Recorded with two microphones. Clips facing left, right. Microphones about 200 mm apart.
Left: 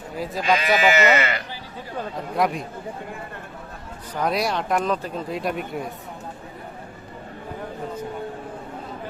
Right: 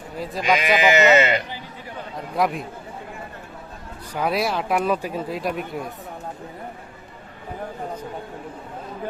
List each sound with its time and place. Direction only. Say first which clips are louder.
0.4 s speech: right 1 dB; 15° right (ahead or behind)
2.1 s speech: right 1 dB; centre (ahead or behind)
4.1 s speech: right 1 dB; 5° right (ahead or behind)